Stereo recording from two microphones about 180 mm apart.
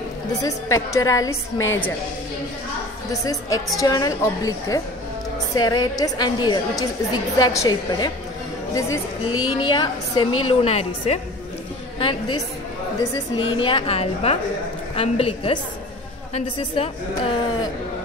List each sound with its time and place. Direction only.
0.4 s a woman's voice: 20° left (ahead or behind)
3.1 s a woman's voice: 20° left (ahead or behind)